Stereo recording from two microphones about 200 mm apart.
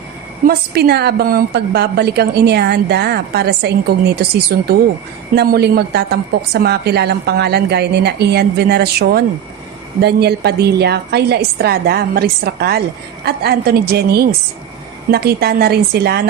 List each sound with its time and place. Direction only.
0.4 s a woman's voice: 50° right (ahead or behind)